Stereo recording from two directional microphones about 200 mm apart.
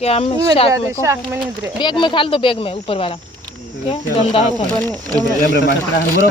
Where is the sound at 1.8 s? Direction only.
25° left (ahead or behind).